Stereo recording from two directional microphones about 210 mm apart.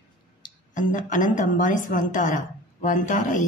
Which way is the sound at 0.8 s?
35° left (ahead or behind).